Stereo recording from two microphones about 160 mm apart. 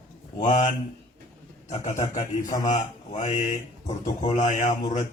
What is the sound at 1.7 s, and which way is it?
Mantra, 45° left (ahead or behind).